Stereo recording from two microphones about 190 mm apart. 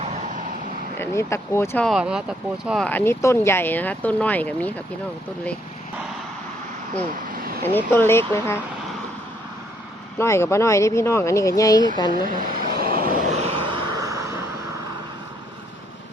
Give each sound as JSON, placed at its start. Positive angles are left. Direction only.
{"t": 0.0, "sound": "vehicle", "side_deg": -35}
{"t": 0.9, "sound": "speech", "side_deg": 15}
{"t": 1.9, "sound": "speech", "side_deg": -5}
{"t": 7.6, "sound": "speech", "side_deg": 10}
{"t": 10.2, "sound": "speech", "side_deg": 15}
{"t": 12.1, "sound": "vehicle", "side_deg": -45}
{"t": 13.3, "sound": "vehicle", "side_deg": -30}